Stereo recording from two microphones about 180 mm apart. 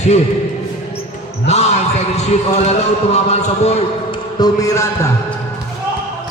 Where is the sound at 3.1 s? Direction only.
35° left (ahead or behind).